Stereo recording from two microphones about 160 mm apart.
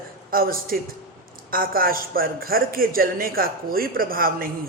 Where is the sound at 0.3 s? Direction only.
65° right (ahead or behind).